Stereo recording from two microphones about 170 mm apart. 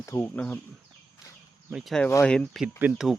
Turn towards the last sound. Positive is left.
turn(degrees=-5)  # may be behind; listen again after turning